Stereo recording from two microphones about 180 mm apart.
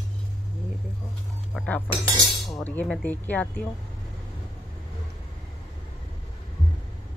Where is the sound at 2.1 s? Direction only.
Centre (ahead or behind).